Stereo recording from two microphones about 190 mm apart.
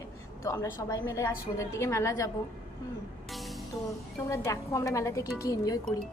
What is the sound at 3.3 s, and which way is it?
Music, centre (ahead or behind).